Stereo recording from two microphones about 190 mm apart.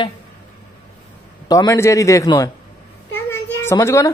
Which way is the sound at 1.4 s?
20° left (ahead or behind).